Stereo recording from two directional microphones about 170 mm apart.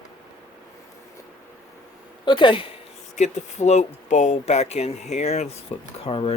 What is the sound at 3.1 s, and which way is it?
Speech, 40° left (ahead or behind).